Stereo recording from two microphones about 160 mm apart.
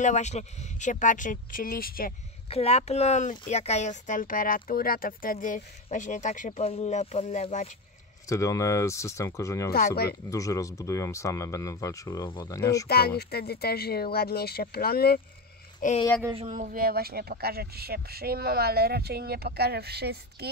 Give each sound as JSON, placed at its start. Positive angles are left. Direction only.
{"t": 0.0, "sound": "speech", "side_deg": 45}
{"t": 2.5, "sound": "speech", "side_deg": 40}
{"t": 8.3, "sound": "speech", "side_deg": 20}
{"t": 12.8, "sound": "speech", "side_deg": 80}
{"t": 15.8, "sound": "speech", "side_deg": 55}
{"t": 16.3, "sound": "speech", "side_deg": -50}